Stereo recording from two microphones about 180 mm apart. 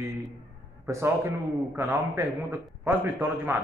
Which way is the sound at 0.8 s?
15° right (ahead or behind).